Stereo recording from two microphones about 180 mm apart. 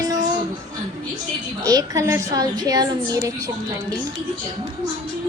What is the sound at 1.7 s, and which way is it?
A woman's voice, 20° right (ahead or behind).